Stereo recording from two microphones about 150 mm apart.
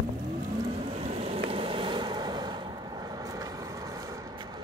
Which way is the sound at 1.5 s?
35° right (ahead or behind).